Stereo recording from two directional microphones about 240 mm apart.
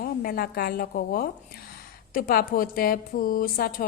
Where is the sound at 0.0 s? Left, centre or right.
Left.